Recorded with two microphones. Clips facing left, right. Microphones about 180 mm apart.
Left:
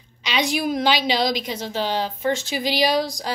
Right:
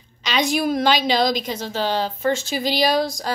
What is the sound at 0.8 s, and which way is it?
Speech, 45° right (ahead or behind).